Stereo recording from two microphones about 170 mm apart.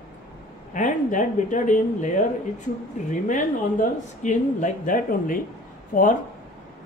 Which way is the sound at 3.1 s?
50° left (ahead or behind).